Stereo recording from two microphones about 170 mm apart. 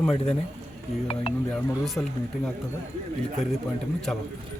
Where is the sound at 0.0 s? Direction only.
5° left (ahead or behind).